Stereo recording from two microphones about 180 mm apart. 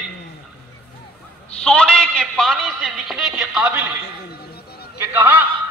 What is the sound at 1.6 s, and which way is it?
A man's voice, 5° left (ahead or behind).